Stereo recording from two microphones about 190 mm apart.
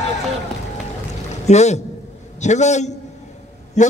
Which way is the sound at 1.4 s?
35° left (ahead or behind).